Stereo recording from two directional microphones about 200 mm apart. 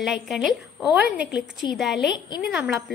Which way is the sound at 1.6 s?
20° left (ahead or behind).